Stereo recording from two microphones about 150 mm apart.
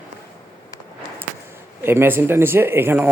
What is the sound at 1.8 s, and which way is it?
Speech, 15° right (ahead or behind).